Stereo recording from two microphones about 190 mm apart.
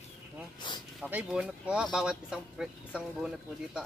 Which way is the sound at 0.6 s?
25° left (ahead or behind).